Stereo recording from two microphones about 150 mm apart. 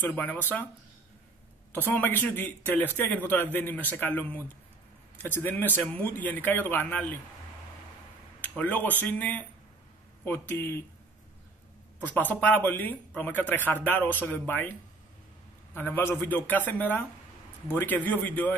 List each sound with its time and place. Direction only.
0.1 s speech: 10° left (ahead or behind)
1.7 s speech: 15° left (ahead or behind)
8.4 s speech: 10° left (ahead or behind)
12.0 s speech: 10° left (ahead or behind)